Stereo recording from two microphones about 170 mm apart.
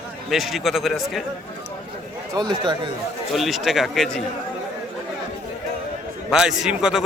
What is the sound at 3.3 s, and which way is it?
Speech, centre (ahead or behind).